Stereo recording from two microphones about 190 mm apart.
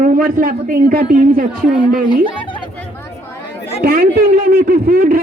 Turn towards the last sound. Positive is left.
turn(degrees=-55)  # may be behind; listen again after turning